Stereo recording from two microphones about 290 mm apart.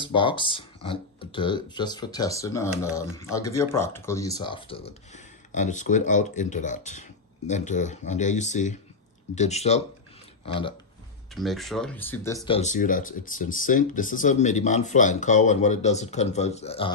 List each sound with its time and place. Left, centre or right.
0.0 s speech: centre
11.3 s speech: centre
12.4 s speech: left